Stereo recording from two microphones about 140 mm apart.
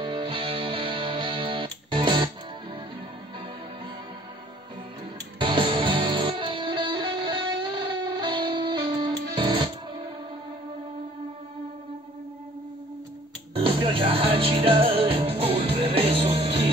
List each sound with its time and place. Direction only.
0.0 s music: 35° right (ahead or behind)
5.4 s music: 35° right (ahead or behind)
13.6 s music: 40° right (ahead or behind)